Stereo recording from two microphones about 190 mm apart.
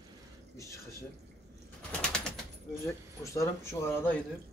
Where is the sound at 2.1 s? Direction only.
5° left (ahead or behind).